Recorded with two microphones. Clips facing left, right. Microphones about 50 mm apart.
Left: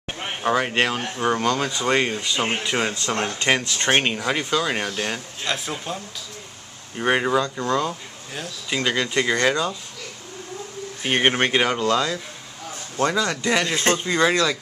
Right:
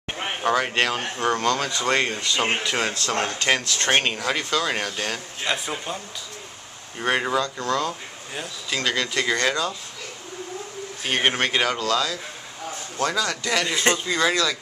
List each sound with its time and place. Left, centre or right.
0.5 s speech: centre
0.9 s speech: centre
1.2 s speech: centre
5.4 s speech: centre
7.0 s speech: centre
7.6 s speech: centre
11.0 s speech: centre
13.7 s speech: centre
13.9 s speech: left